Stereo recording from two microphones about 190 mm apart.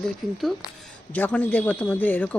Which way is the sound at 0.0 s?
Centre (ahead or behind).